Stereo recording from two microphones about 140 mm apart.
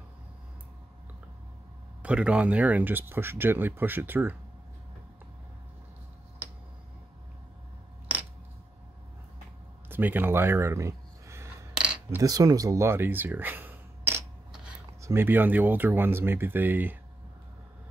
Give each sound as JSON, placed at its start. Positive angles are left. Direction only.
{"t": 2.0, "sound": "speech", "side_deg": -10}
{"t": 9.8, "sound": "speech", "side_deg": -15}
{"t": 11.8, "sound": "cutlery", "side_deg": -5}
{"t": 12.2, "sound": "speech", "side_deg": -25}